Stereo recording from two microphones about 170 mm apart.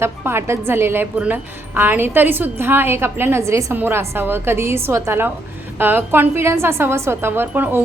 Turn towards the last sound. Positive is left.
turn(degrees=-10)  # may be behind; listen again after turning